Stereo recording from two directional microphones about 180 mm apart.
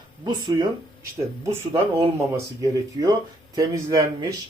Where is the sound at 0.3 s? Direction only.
25° right (ahead or behind).